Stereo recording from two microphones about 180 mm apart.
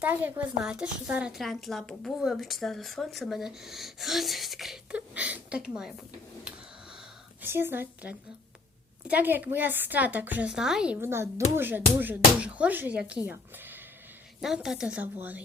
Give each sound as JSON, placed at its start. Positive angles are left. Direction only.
{"t": 0.0, "sound": "speech", "side_deg": -10}
{"t": 7.4, "sound": "a woman's voice", "side_deg": -10}